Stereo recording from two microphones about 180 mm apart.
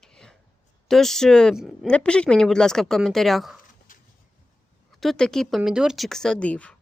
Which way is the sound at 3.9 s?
50° left (ahead or behind).